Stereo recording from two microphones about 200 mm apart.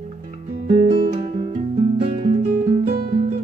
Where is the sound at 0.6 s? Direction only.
30° right (ahead or behind).